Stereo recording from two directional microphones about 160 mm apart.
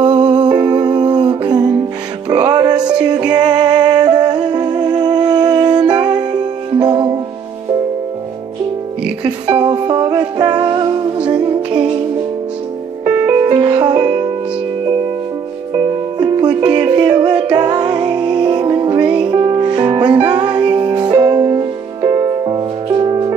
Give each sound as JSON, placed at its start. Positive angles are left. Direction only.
{"t": 0.0, "sound": "music", "side_deg": -25}
{"t": 9.5, "sound": "music", "side_deg": -25}
{"t": 13.0, "sound": "music", "side_deg": -15}
{"t": 13.5, "sound": "music", "side_deg": -25}
{"t": 15.7, "sound": "music", "side_deg": -25}